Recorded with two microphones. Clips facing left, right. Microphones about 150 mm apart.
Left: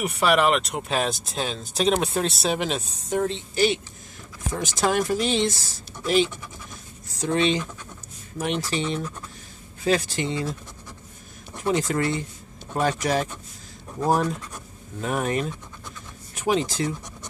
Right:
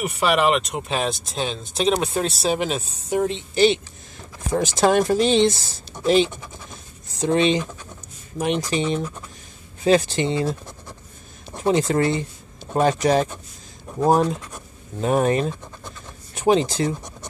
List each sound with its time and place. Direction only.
0.0 s speech: centre (ahead or behind)
3.2 s speech: 15° right (ahead or behind)
15.0 s speech: 30° right (ahead or behind)